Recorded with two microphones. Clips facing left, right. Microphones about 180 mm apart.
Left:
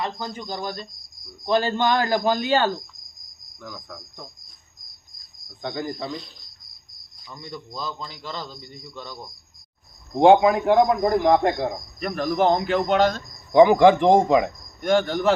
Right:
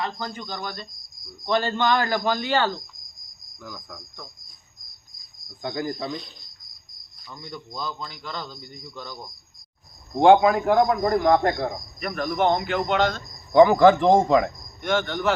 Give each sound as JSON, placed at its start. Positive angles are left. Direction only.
{"t": 0.0, "sound": "a man's voice", "side_deg": 5}
{"t": 3.6, "sound": "a man's voice", "side_deg": -5}
{"t": 5.6, "sound": "a man's voice", "side_deg": -5}
{"t": 10.2, "sound": "a man's voice", "side_deg": 25}
{"t": 12.4, "sound": "a man's voice", "side_deg": 35}
{"t": 13.5, "sound": "a man's voice", "side_deg": 15}
{"t": 14.8, "sound": "a man's voice", "side_deg": 40}